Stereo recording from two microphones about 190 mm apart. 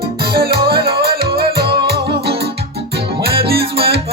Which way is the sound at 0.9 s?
55° right (ahead or behind).